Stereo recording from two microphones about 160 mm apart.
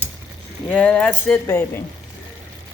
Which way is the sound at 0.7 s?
10° left (ahead or behind).